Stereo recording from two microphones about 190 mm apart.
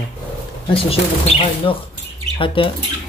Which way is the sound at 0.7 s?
30° left (ahead or behind).